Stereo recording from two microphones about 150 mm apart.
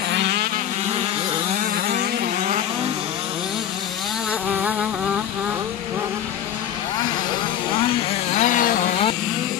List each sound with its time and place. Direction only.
0.1 s vehicle: 90° right
1.6 s vehicle: 60° right (ahead or behind)
4.6 s insect: 5° right (ahead or behind)
7.7 s vehicle: 35° left (ahead or behind)
8.4 s a sound: 60° left (ahead or behind)